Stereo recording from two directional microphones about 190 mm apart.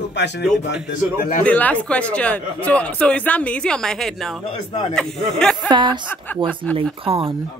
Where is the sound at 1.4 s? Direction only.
10° left (ahead or behind).